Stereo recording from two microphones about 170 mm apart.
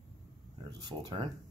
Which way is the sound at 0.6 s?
25° right (ahead or behind).